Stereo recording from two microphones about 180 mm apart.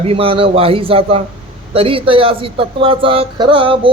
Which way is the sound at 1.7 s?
30° right (ahead or behind).